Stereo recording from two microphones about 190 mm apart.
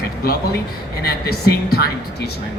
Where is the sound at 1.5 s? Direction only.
55° left (ahead or behind).